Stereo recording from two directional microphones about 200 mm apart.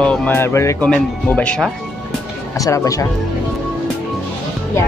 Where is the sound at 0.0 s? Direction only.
5° left (ahead or behind).